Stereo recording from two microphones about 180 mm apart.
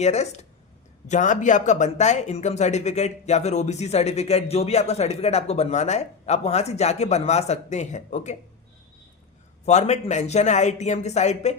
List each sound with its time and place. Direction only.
0.0 s speech: 40° left (ahead or behind)
9.6 s speech: 40° left (ahead or behind)